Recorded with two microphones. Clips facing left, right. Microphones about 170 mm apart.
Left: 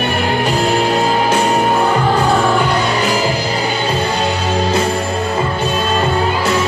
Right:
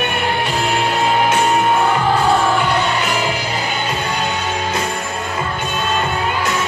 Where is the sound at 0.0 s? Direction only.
35° left (ahead or behind).